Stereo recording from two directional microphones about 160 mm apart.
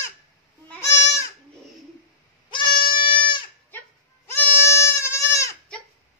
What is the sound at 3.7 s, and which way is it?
Goat, 10° left (ahead or behind).